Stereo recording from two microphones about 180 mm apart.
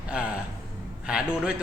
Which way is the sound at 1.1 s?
5° right (ahead or behind).